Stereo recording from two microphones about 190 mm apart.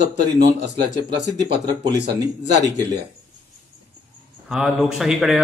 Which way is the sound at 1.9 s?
65° right (ahead or behind).